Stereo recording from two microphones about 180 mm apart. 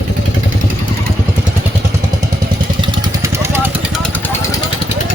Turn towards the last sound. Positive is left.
turn(degrees=10)  # may be behind; listen again after turning